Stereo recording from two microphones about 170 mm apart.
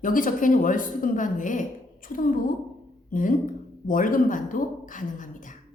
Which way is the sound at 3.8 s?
50° left (ahead or behind).